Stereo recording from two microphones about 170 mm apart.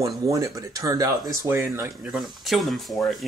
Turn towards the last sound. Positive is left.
turn(degrees=0)  # may be behind; listen again after turning